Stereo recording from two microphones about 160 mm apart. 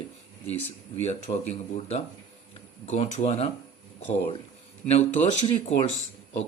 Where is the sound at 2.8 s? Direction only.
45° left (ahead or behind).